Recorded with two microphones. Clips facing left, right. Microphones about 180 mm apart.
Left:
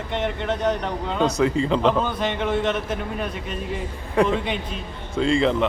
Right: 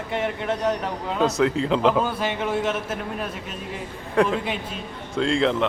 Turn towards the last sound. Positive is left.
turn(degrees=0)  # may be behind; listen again after turning